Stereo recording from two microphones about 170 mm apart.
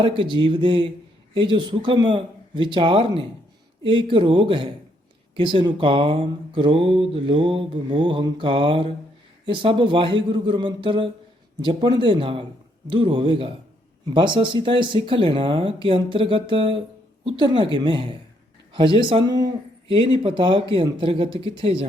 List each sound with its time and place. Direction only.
0.0 s speech: 30° right (ahead or behind)